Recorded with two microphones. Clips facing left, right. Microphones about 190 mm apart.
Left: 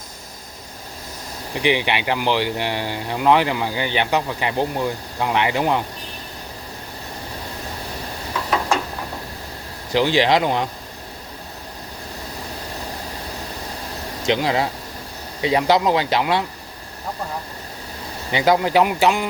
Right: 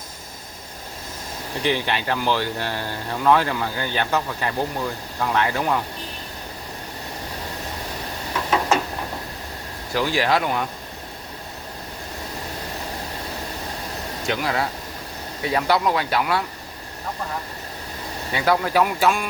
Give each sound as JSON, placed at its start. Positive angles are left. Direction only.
{"t": 1.6, "sound": "speech", "side_deg": 15}
{"t": 9.9, "sound": "speech", "side_deg": 25}
{"t": 14.3, "sound": "speech", "side_deg": 25}
{"t": 18.3, "sound": "speech", "side_deg": 20}